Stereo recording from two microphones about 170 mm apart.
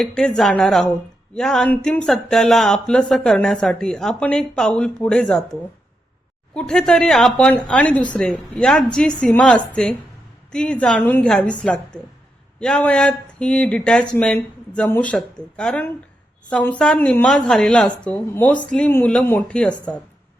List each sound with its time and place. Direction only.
0.0 s speech: 5° left (ahead or behind)
6.5 s a woman's voice: 5° left (ahead or behind)